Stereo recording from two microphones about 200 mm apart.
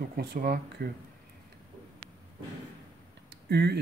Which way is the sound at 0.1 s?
50° right (ahead or behind).